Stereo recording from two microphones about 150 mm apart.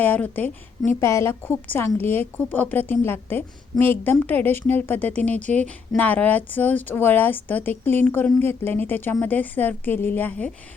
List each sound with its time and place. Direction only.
0.0 s a woman's voice: 10° left (ahead or behind)